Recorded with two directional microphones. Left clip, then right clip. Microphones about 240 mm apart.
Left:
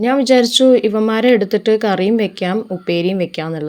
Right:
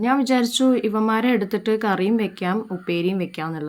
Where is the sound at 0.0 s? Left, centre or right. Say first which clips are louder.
Left 8 dB; centre.